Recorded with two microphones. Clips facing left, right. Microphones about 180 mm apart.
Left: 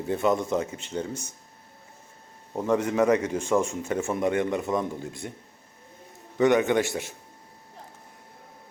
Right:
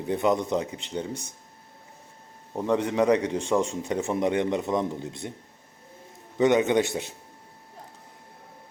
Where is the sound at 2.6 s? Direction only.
20° right (ahead or behind).